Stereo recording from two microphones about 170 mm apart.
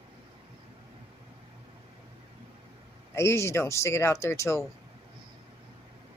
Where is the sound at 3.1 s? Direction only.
15° left (ahead or behind).